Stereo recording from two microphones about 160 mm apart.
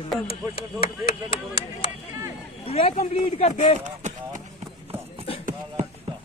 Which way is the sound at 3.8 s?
50° right (ahead or behind).